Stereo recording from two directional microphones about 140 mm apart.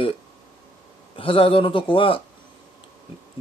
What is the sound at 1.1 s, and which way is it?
Speech, 40° left (ahead or behind).